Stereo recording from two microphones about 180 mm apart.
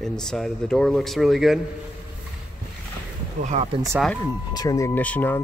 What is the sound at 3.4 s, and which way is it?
Speech, 35° right (ahead or behind).